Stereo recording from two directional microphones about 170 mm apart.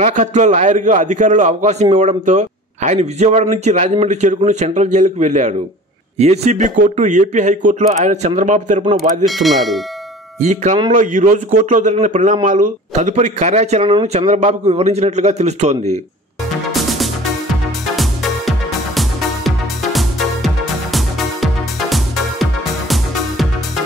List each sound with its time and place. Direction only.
0.0 s speech: 45° right (ahead or behind)
9.2 s speech: centre (ahead or behind)
10.4 s speech: 45° right (ahead or behind)
18.9 s music: centre (ahead or behind)